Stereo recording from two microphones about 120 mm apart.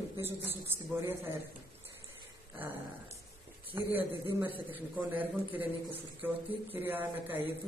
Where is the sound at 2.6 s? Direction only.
15° right (ahead or behind).